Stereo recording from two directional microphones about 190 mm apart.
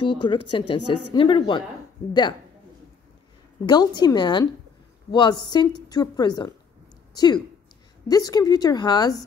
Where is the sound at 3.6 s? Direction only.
20° left (ahead or behind).